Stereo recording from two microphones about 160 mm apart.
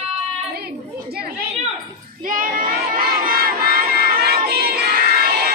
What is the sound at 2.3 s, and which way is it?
Crowd, 60° right (ahead or behind).